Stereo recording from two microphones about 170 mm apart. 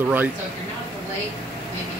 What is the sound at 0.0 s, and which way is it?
Speech, 10° right (ahead or behind).